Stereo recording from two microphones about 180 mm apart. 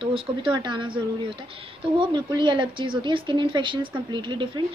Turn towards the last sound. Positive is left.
turn(degrees=-25)  # may be behind; listen again after turning